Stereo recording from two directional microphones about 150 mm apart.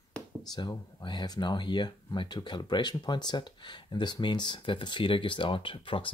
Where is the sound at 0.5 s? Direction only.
30° left (ahead or behind).